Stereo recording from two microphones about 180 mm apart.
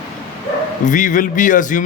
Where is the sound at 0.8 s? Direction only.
45° left (ahead or behind).